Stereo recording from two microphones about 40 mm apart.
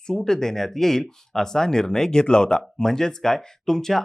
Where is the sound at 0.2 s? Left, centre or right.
Centre.